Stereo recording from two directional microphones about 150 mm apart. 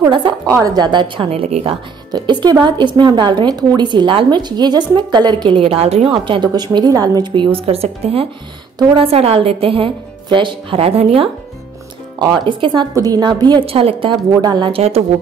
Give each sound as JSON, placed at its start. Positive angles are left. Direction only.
{"t": 0.7, "sound": "a woman's voice", "side_deg": -30}
{"t": 2.1, "sound": "a woman's voice", "side_deg": -30}
{"t": 8.7, "sound": "a woman's voice", "side_deg": -25}
{"t": 9.0, "sound": "a woman's voice", "side_deg": -40}
{"t": 14.8, "sound": "a woman's voice", "side_deg": -45}